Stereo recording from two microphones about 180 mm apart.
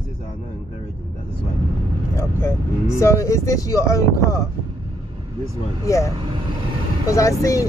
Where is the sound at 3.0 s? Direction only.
15° left (ahead or behind).